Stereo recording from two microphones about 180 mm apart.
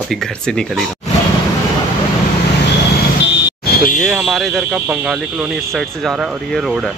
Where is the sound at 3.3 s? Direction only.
75° left (ahead or behind).